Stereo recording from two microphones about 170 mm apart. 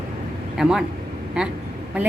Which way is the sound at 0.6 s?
5° right (ahead or behind).